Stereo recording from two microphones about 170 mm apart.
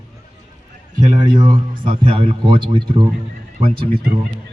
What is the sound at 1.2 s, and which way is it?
A man's voice, 25° right (ahead or behind).